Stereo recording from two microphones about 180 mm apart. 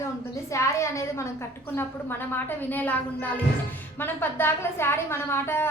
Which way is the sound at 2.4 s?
10° left (ahead or behind).